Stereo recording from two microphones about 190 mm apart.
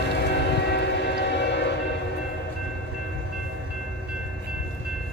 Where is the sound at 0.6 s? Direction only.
60° left (ahead or behind).